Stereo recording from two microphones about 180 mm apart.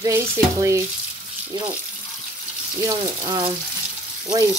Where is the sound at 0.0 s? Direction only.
15° right (ahead or behind).